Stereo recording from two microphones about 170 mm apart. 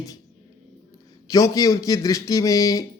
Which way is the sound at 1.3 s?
20° left (ahead or behind).